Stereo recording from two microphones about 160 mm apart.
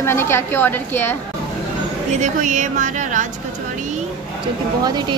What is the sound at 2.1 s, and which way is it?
Speech, 50° right (ahead or behind).